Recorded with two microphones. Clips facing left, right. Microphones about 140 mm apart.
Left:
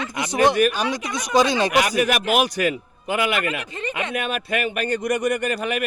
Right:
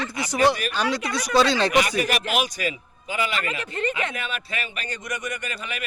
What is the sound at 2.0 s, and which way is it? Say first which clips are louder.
Speech: left 5 dB; 55° left (ahead or behind).